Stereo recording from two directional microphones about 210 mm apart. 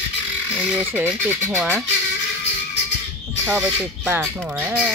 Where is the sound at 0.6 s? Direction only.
10° right (ahead or behind).